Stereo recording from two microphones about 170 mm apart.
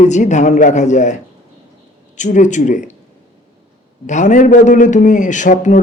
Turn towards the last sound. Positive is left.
turn(degrees=45)  # may be behind; listen again after turning